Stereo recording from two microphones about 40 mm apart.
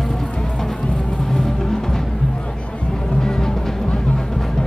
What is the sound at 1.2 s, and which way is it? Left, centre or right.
Music, centre.